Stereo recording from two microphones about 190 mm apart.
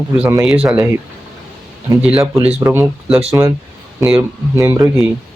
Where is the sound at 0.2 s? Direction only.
15° right (ahead or behind).